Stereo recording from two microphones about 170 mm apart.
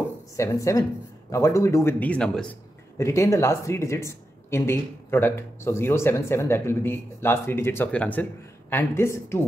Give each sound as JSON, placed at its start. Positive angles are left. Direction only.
{"t": 0.4, "sound": "speech", "side_deg": 20}
{"t": 3.0, "sound": "speech", "side_deg": 15}